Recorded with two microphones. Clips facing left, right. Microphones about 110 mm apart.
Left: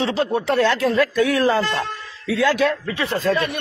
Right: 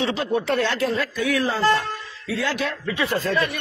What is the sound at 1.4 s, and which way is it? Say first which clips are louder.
Speech: left 2 dB; 75° left (ahead or behind).